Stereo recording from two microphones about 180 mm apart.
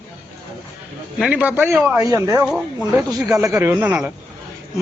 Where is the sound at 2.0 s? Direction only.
20° right (ahead or behind).